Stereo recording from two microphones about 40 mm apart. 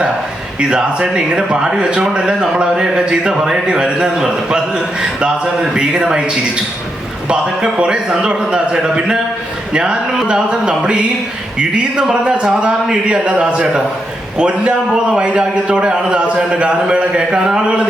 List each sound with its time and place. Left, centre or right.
0.7 s speech: right